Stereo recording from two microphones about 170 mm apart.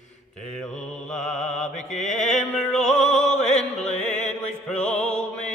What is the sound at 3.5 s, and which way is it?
Music, 40° left (ahead or behind).